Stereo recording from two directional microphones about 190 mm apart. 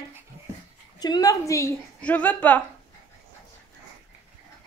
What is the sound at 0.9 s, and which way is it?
A woman's voice, 20° left (ahead or behind).